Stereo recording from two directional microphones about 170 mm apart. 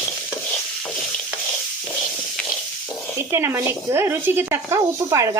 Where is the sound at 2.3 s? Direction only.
5° left (ahead or behind).